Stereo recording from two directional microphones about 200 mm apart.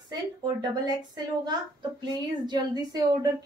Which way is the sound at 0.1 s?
20° right (ahead or behind).